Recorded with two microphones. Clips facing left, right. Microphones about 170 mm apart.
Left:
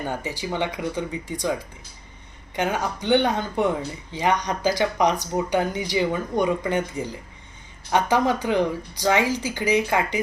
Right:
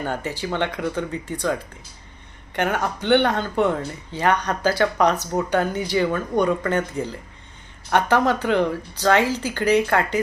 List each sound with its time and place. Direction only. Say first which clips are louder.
0.0 s speech: right 2 dB; 10° left (ahead or behind)